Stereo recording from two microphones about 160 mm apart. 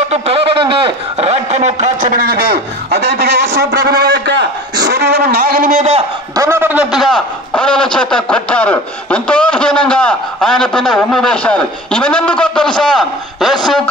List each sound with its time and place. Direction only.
0.1 s a man's voice: 35° right (ahead or behind)
6.3 s a man's voice: 15° right (ahead or behind); by 13.6 s centre (ahead or behind)